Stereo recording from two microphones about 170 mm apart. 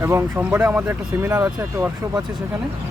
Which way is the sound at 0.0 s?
15° right (ahead or behind).